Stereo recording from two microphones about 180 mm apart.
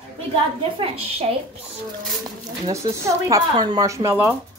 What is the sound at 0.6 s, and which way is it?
Speech, 30° right (ahead or behind).